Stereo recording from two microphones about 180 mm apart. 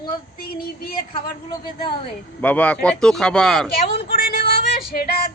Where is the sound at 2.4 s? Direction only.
10° left (ahead or behind).